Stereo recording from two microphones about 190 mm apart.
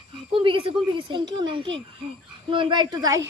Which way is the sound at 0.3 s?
25° right (ahead or behind).